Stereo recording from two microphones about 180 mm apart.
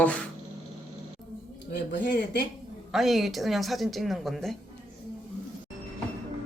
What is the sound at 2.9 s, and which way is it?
Speech, centre (ahead or behind).